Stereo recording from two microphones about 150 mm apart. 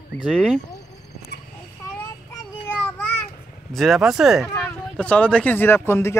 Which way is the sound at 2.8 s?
10° left (ahead or behind).